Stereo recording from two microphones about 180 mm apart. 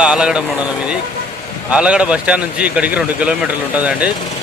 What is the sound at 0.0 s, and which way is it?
Speech, 5° right (ahead or behind).